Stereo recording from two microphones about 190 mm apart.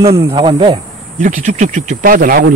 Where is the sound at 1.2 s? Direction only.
40° right (ahead or behind).